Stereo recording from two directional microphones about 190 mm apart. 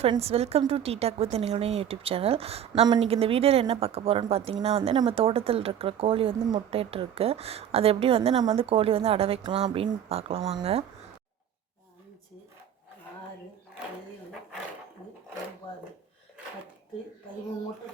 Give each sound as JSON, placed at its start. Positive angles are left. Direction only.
{"t": 0.0, "sound": "a woman's voice", "side_deg": -30}